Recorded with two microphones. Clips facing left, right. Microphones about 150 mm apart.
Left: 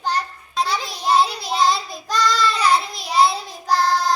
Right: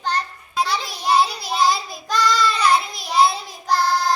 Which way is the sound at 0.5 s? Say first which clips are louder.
Even; 5° right (ahead or behind).